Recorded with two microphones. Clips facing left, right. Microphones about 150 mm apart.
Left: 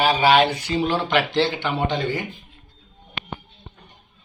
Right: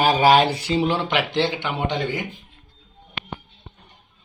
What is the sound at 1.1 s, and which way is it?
Speech, 20° right (ahead or behind).